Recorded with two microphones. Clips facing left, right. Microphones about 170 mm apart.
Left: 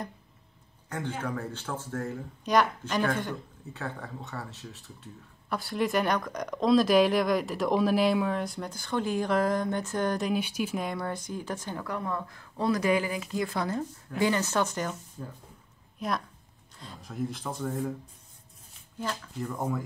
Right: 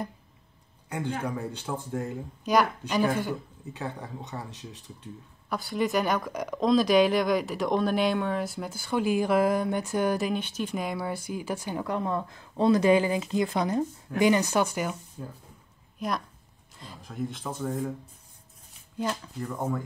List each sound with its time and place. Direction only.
0.8 s a man's voice: 10° right (ahead or behind)
2.4 s speech: 5° right (ahead or behind)
3.7 s speech: 15° right (ahead or behind)
5.5 s speech: centre (ahead or behind)
10.3 s speech: 10° left (ahead or behind); by 15.2 s 10° right (ahead or behind)
16.0 s speech: centre (ahead or behind)
19.4 s speech: centre (ahead or behind)